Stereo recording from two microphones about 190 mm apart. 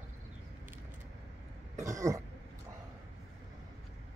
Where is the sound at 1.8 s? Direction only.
15° right (ahead or behind).